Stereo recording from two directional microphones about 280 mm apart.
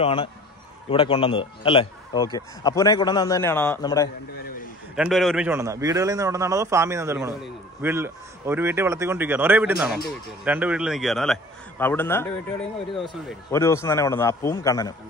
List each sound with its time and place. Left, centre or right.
0.0 s a man's voice: centre
4.9 s a man's voice: centre